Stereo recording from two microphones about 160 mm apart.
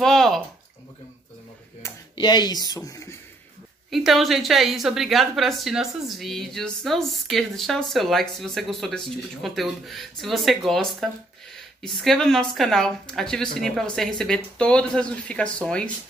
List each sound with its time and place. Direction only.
0.0 s a woman's voice: 5° left (ahead or behind)
2.1 s speech: 25° left (ahead or behind)
3.9 s a woman's voice: centre (ahead or behind)